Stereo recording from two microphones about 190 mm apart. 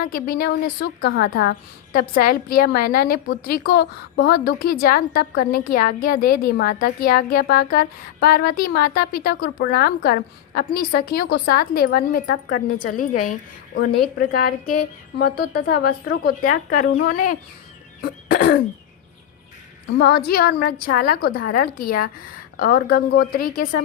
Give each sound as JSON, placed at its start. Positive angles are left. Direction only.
{"t": 0.0, "sound": "a woman's voice", "side_deg": 50}
{"t": 18.0, "sound": "cough", "side_deg": 50}
{"t": 20.0, "sound": "a woman's voice", "side_deg": 55}